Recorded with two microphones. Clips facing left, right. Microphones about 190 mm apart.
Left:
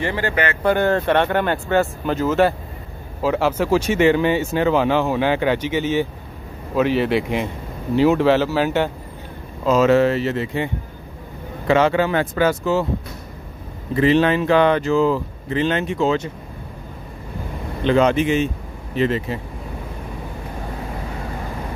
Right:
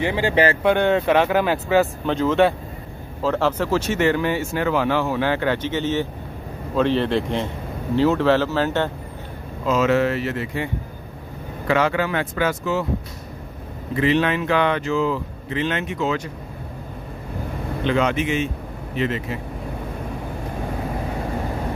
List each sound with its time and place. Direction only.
0.0 s speech: 15° right (ahead or behind)
0.6 s speech: centre (ahead or behind)
9.7 s speech: 35° left (ahead or behind)
13.9 s speech: 35° left (ahead or behind)
17.8 s speech: 35° left (ahead or behind)